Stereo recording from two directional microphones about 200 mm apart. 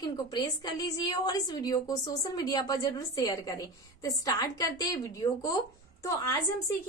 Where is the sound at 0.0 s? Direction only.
20° left (ahead or behind).